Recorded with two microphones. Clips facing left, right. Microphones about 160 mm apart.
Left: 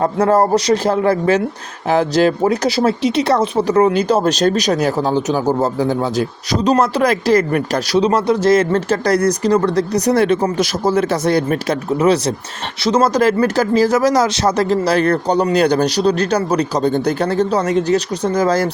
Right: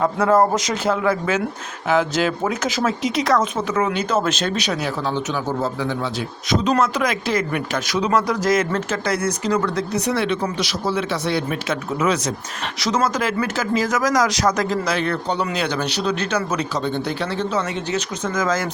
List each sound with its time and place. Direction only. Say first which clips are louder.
0.0 s speech: left 3 dB; 35° left (ahead or behind)